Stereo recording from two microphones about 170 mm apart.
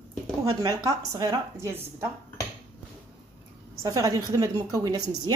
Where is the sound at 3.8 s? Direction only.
20° right (ahead or behind).